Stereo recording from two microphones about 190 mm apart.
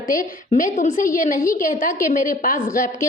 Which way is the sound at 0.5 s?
45° left (ahead or behind).